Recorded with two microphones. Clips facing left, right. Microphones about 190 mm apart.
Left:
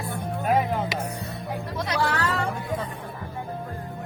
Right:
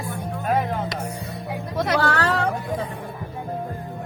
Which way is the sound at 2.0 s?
65° right (ahead or behind).